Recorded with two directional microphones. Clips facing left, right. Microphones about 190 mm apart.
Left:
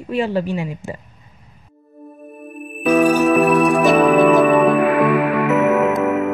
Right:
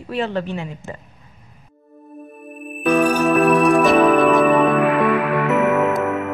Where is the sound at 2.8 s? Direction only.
Centre (ahead or behind).